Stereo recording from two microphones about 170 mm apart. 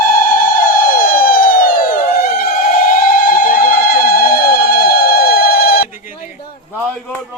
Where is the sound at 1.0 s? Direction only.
55° left (ahead or behind).